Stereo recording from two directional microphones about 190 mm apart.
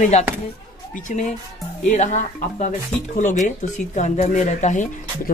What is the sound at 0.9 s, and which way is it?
Speech, 40° left (ahead or behind).